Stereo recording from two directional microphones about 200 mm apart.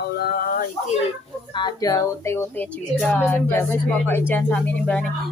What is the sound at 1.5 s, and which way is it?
Speech, 20° left (ahead or behind).